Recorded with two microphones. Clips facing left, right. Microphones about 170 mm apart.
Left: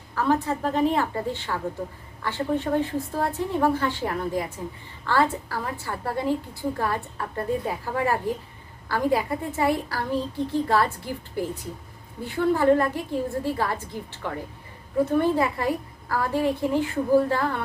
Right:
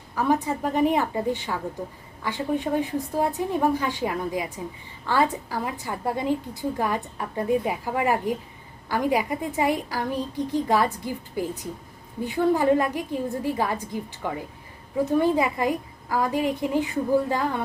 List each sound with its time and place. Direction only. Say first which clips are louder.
0.2 s a woman's voice: even; 15° right (ahead or behind)